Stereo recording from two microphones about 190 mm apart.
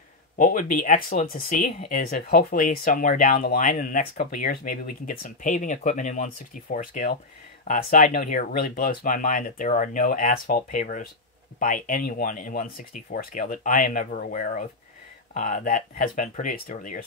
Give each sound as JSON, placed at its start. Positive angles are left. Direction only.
{"t": 0.4, "sound": "speech", "side_deg": 45}